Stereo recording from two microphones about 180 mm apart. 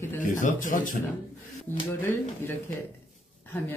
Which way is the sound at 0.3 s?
45° left (ahead or behind).